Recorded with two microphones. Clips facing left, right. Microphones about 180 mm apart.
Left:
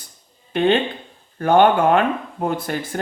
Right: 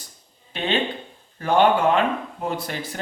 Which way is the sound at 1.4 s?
55° left (ahead or behind).